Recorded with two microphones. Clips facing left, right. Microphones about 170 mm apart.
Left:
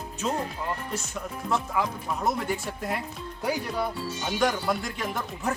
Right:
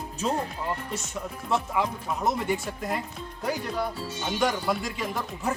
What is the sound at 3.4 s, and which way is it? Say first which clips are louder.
Speech: left 1 dB; centre (ahead or behind).